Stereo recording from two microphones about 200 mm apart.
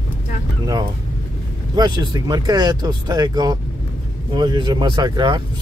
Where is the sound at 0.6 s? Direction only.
20° right (ahead or behind).